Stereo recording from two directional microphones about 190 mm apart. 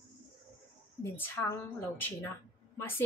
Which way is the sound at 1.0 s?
10° left (ahead or behind).